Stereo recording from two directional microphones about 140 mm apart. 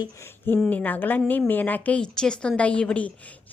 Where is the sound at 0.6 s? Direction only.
10° left (ahead or behind).